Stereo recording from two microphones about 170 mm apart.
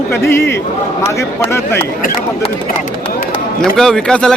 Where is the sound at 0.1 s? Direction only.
15° left (ahead or behind).